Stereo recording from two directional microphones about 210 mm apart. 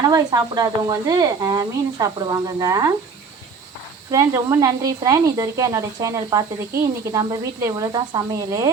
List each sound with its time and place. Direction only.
0.0 s speech: 20° right (ahead or behind)
4.1 s speech: 15° right (ahead or behind)